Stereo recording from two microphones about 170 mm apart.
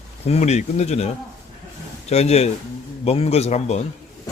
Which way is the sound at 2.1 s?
40° left (ahead or behind).